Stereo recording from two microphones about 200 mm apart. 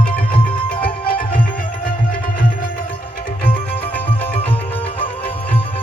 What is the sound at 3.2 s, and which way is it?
Music, 45° left (ahead or behind).